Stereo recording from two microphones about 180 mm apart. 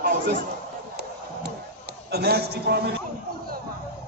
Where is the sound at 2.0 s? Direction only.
65° right (ahead or behind).